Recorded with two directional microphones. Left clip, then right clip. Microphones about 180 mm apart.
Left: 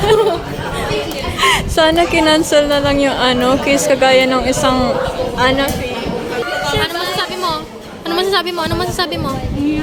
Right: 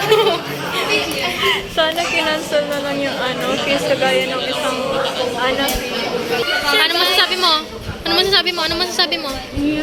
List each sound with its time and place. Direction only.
0.1 s chatter: 35° left (ahead or behind)
1.4 s a woman's voice: 35° left (ahead or behind)
7.2 s a sound: 5° left (ahead or behind)
8.1 s a woman's voice: 25° left (ahead or behind)